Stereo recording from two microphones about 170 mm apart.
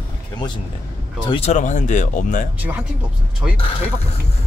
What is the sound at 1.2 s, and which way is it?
Speech, 35° left (ahead or behind).